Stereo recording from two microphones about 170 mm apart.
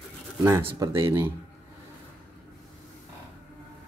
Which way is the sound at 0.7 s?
20° right (ahead or behind).